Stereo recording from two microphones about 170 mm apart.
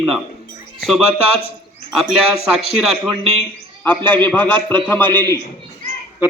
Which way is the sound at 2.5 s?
Centre (ahead or behind).